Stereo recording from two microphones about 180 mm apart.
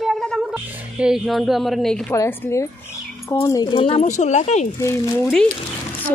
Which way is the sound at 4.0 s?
40° left (ahead or behind).